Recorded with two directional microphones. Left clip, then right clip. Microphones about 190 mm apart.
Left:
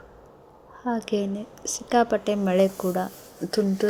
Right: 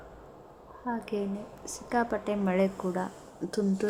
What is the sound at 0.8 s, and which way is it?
A woman's voice, 30° left (ahead or behind).